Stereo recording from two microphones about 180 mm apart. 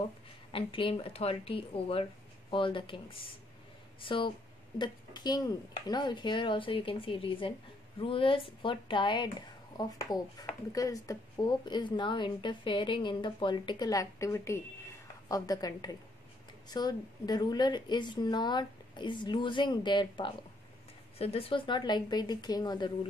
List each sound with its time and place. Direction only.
0.5 s speech: 30° left (ahead or behind)